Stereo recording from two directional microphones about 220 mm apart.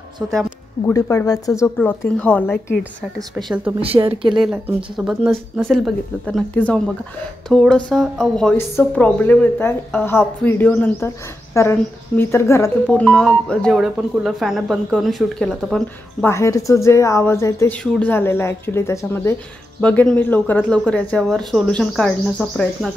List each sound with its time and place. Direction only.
0.9 s a woman's voice: 15° left (ahead or behind); by 3.7 s centre (ahead or behind)
3.8 s speech: 25° right (ahead or behind)
4.4 s a woman's voice: 5° right (ahead or behind)